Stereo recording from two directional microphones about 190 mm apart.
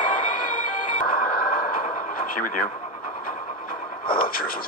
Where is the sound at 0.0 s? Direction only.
45° left (ahead or behind).